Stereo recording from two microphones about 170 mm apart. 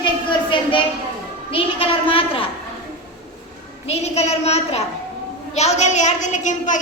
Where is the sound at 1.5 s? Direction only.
30° left (ahead or behind).